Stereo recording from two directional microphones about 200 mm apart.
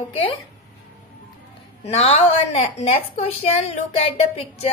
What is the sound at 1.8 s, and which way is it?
A woman's voice, 30° left (ahead or behind).